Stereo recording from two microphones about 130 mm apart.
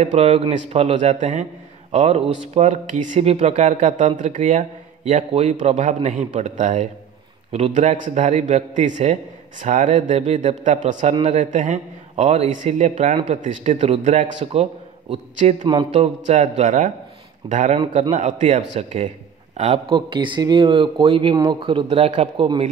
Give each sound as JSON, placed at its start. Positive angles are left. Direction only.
{"t": 0.0, "sound": "a man's voice", "side_deg": -50}
{"t": 3.3, "sound": "a man's voice", "side_deg": -55}
{"t": 5.3, "sound": "a man's voice", "side_deg": -60}
{"t": 7.5, "sound": "a man's voice", "side_deg": -55}
{"t": 15.6, "sound": "speech", "side_deg": -35}
{"t": 15.9, "sound": "a man's voice", "side_deg": -60}
{"t": 19.5, "sound": "speech", "side_deg": -50}
{"t": 21.8, "sound": "a man's voice", "side_deg": -55}